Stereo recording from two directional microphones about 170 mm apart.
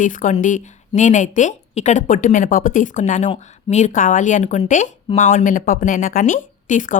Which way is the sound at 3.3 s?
35° left (ahead or behind).